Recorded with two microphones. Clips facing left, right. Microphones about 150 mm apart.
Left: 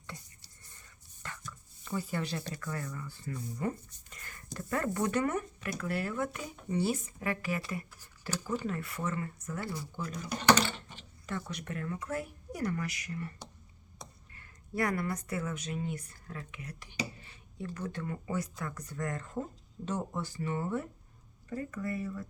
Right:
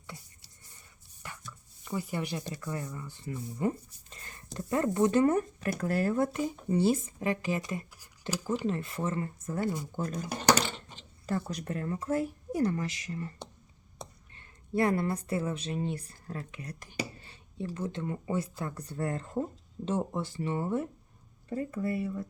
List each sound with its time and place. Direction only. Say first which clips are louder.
1.2 s chopping: even; 10° right (ahead or behind)
1.8 s speech: right 1 dB; 15° right (ahead or behind)
7.9 s a sound: right 3 dB; 10° right (ahead or behind)
8.4 s speech: right 4 dB; 25° right (ahead or behind)
9.6 s speech: right 7 dB; 20° right (ahead or behind)
9.9 s speech: right 3 dB; 45° right (ahead or behind)
10.9 s speech: right 6 dB; 35° right (ahead or behind)
17.7 s speech: right 3 dB; 25° right (ahead or behind)